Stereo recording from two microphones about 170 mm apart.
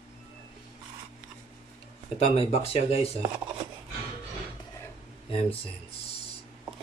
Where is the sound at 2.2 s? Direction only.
35° left (ahead or behind).